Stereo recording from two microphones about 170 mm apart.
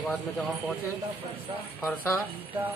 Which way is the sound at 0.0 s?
Centre (ahead or behind).